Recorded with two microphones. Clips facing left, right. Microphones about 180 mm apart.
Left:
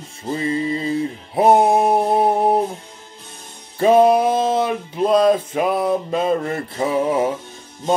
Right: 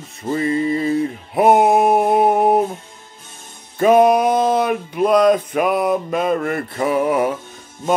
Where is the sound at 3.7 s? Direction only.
30° left (ahead or behind).